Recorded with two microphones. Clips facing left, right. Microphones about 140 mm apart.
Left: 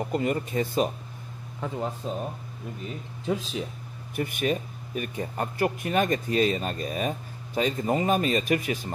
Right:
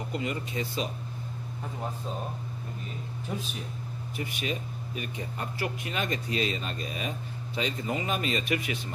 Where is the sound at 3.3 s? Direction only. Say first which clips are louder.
Left 8 dB; 90° left.